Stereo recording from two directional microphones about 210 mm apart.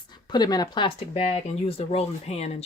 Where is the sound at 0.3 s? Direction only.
20° left (ahead or behind).